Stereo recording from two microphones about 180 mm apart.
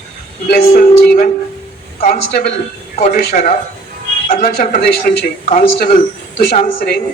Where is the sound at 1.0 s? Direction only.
50° left (ahead or behind).